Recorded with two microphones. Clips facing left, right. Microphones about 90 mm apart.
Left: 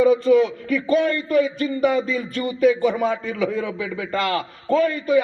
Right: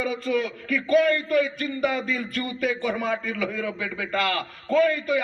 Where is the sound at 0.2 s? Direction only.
30° left (ahead or behind).